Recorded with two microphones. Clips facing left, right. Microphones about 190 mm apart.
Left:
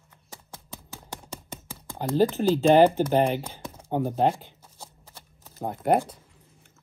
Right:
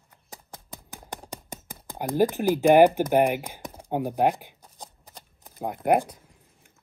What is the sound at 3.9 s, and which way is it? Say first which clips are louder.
Shuffling cards: even; 15° right (ahead or behind).